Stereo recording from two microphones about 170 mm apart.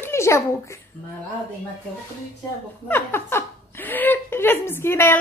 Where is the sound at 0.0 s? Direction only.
15° left (ahead or behind).